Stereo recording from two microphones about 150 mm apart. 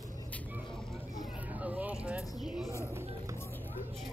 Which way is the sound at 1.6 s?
10° right (ahead or behind).